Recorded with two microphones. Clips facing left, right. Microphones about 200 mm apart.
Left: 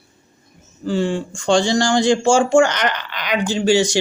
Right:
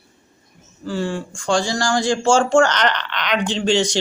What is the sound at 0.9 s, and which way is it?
Speech, 20° left (ahead or behind).